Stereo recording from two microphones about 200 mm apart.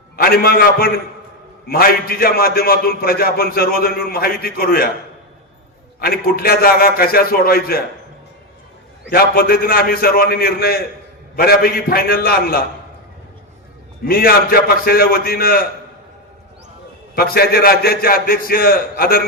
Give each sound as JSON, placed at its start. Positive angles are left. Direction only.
{"t": 0.2, "sound": "a man's voice", "side_deg": 50}
{"t": 6.0, "sound": "a man's voice", "side_deg": 50}
{"t": 9.0, "sound": "a man's voice", "side_deg": 50}
{"t": 14.0, "sound": "a man's voice", "side_deg": 45}
{"t": 17.2, "sound": "a man's voice", "side_deg": 50}